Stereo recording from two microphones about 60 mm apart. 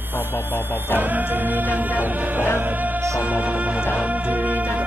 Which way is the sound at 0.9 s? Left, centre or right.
Right.